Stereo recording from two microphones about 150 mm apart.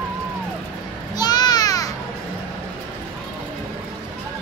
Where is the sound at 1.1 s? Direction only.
25° left (ahead or behind).